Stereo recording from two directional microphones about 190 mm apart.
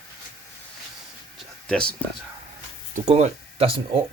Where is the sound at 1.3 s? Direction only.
5° left (ahead or behind).